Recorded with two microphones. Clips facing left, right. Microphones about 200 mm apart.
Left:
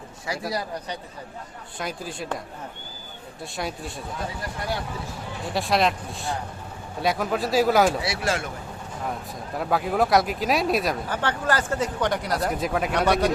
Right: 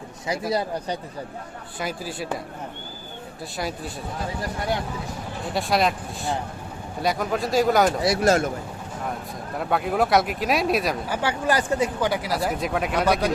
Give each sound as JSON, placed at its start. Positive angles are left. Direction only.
{"t": 0.3, "sound": "speech", "side_deg": -20}
{"t": 1.8, "sound": "speech", "side_deg": -5}
{"t": 3.6, "sound": "speech", "side_deg": 0}
{"t": 5.5, "sound": "speech", "side_deg": 0}
{"t": 8.0, "sound": "speech", "side_deg": -40}
{"t": 9.6, "sound": "speech", "side_deg": 0}
{"t": 11.2, "sound": "speech", "side_deg": -10}